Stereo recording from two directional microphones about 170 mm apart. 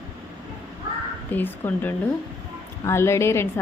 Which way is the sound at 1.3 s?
10° left (ahead or behind).